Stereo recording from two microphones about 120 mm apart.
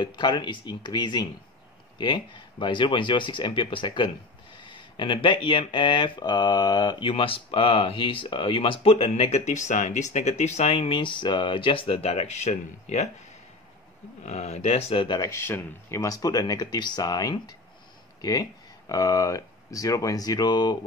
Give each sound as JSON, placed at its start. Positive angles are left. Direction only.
{"t": 0.0, "sound": "speech", "side_deg": 40}
{"t": 14.2, "sound": "speech", "side_deg": 70}
{"t": 15.3, "sound": "speech", "side_deg": 20}